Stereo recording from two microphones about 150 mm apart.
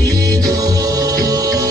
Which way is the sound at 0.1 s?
25° right (ahead or behind).